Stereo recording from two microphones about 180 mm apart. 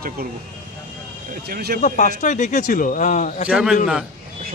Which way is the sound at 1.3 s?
55° right (ahead or behind).